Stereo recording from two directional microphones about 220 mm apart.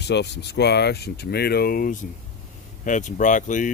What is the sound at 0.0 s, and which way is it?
Speech, 50° left (ahead or behind).